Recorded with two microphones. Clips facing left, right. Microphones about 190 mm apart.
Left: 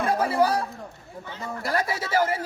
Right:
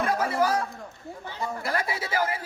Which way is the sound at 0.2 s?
35° left (ahead or behind).